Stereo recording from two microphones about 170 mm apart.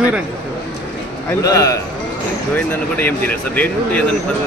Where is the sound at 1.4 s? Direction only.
20° left (ahead or behind).